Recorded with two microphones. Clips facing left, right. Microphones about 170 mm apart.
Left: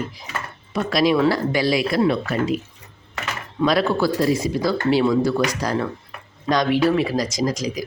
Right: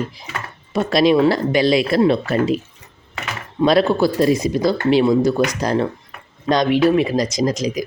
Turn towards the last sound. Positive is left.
turn(degrees=-20)  # may be behind; listen again after turning